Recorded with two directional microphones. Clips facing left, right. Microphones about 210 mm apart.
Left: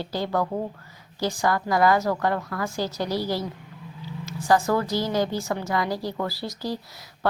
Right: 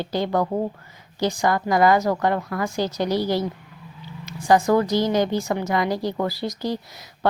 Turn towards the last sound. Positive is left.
turn(degrees=-20)  # may be behind; listen again after turning